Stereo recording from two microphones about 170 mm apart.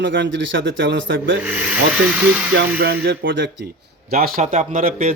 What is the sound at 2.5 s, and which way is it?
Speech, 70° right (ahead or behind).